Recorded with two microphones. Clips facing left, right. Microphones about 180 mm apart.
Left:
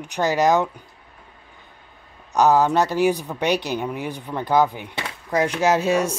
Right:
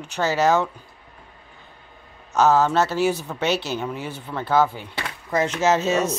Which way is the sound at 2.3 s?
15° left (ahead or behind).